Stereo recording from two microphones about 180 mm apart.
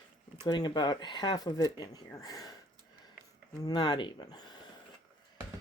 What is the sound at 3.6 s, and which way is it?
Speech, 25° left (ahead or behind).